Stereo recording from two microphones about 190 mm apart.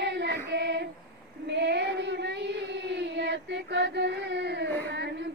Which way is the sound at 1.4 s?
65° right (ahead or behind).